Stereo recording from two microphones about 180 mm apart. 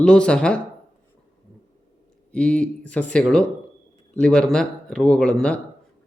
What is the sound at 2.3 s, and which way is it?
Speech, 5° left (ahead or behind).